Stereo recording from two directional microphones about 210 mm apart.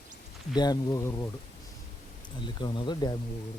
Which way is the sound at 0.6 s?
20° left (ahead or behind).